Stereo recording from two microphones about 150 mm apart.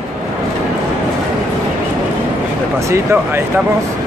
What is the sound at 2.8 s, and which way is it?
Speech, 20° right (ahead or behind).